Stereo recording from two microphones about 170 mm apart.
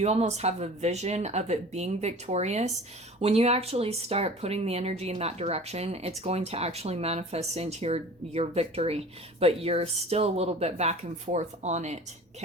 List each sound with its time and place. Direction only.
0.0 s speech: 40° right (ahead or behind)